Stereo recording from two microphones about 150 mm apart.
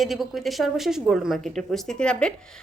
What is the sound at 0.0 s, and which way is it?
A woman's voice, centre (ahead or behind).